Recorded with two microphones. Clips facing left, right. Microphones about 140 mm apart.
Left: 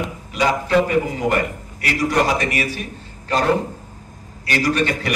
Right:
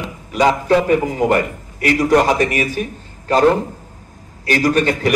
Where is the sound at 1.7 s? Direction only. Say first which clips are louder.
Right 6 dB; 45° right (ahead or behind).